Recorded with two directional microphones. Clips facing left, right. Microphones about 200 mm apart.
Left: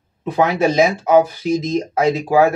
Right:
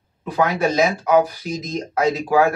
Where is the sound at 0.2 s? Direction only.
25° left (ahead or behind).